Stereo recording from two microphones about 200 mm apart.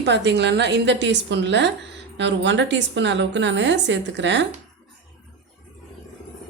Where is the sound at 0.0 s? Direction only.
60° right (ahead or behind).